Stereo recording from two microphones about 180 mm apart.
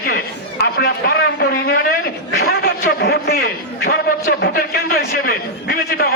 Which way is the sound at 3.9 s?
55° left (ahead or behind).